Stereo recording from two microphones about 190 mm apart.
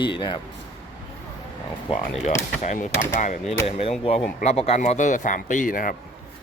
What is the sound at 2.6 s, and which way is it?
Speech, 40° left (ahead or behind).